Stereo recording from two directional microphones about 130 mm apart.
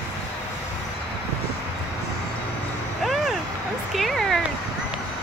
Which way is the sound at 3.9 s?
Centre (ahead or behind).